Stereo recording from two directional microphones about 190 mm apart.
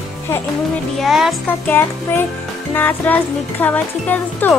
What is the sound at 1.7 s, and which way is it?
Speech, 10° left (ahead or behind).